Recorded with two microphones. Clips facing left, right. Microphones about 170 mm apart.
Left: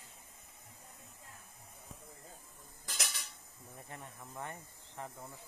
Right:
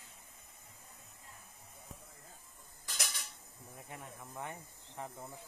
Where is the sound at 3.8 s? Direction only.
5° right (ahead or behind).